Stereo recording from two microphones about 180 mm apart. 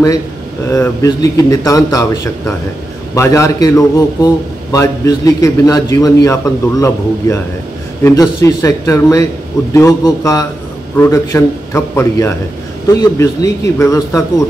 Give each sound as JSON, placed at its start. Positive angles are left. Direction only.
{"t": 0.7, "sound": "a man's voice", "side_deg": 15}